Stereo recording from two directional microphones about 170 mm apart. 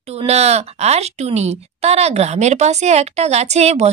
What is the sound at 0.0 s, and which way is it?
A woman's voice, 35° right (ahead or behind).